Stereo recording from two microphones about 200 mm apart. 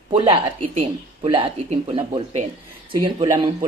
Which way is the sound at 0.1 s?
25° right (ahead or behind).